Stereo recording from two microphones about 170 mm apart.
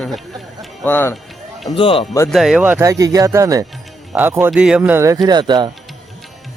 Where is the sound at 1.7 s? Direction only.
30° left (ahead or behind).